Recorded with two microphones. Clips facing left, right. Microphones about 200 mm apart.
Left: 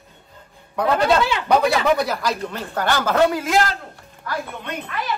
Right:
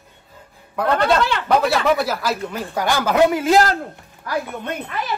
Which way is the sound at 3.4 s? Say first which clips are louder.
Right 4 dB; 35° right (ahead or behind).